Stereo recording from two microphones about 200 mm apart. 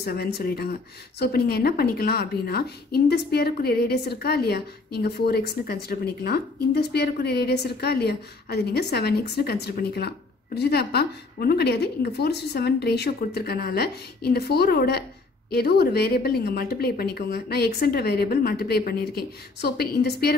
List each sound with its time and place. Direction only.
0.0 s a woman's voice: 50° left (ahead or behind)